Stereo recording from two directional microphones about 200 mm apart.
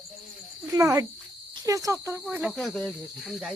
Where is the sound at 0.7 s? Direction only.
15° right (ahead or behind).